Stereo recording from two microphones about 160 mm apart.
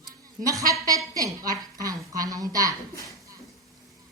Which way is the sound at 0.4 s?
20° right (ahead or behind).